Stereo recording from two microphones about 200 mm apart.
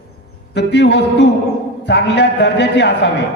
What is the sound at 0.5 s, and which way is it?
A man's voice, 60° left (ahead or behind).